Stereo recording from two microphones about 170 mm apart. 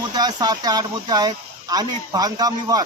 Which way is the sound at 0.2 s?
25° right (ahead or behind).